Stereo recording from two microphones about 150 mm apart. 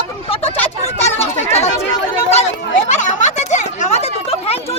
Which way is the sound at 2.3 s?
45° left (ahead or behind).